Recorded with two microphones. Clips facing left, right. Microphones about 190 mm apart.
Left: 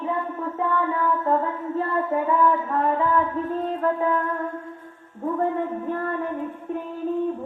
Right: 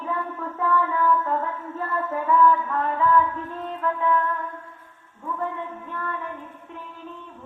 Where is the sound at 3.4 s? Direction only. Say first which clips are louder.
Left 5 dB; 40° left (ahead or behind).